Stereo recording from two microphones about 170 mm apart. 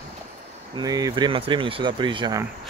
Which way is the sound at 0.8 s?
20° right (ahead or behind).